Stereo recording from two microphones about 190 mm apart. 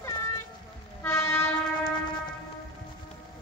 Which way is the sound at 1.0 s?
15° left (ahead or behind).